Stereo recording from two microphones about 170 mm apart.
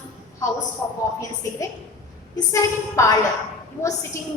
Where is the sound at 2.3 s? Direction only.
20° left (ahead or behind).